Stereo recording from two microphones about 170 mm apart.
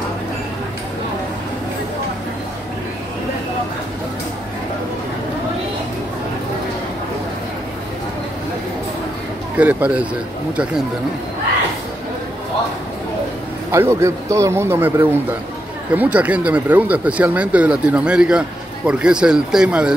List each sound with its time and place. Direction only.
9.6 s speech: 10° right (ahead or behind)
13.7 s a man's voice: 15° right (ahead or behind)